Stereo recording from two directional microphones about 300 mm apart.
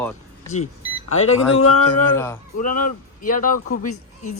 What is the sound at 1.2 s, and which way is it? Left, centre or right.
Speech, left.